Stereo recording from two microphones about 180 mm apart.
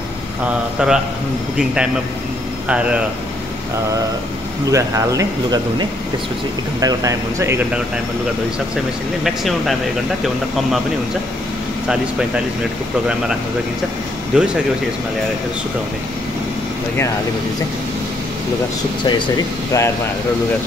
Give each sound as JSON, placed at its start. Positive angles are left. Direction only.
{"t": 0.7, "sound": "speech", "side_deg": -5}
{"t": 2.7, "sound": "speech", "side_deg": -5}
{"t": 4.6, "sound": "speech", "side_deg": -20}
{"t": 9.2, "sound": "speech", "side_deg": 0}
{"t": 14.3, "sound": "speech", "side_deg": -5}
{"t": 19.0, "sound": "speech", "side_deg": 25}